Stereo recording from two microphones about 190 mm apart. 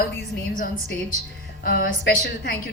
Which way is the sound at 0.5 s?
45° left (ahead or behind).